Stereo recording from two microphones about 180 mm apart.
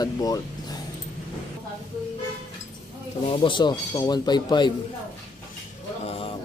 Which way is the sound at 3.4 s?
25° left (ahead or behind).